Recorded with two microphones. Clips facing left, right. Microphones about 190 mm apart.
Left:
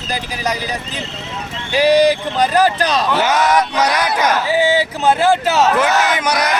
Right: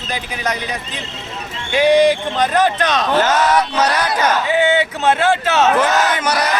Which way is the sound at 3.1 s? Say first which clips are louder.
Right 1 dB; 10° left (ahead or behind).